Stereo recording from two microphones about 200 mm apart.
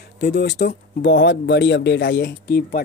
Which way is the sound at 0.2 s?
55° left (ahead or behind).